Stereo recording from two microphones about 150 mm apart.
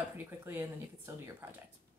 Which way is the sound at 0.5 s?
15° right (ahead or behind).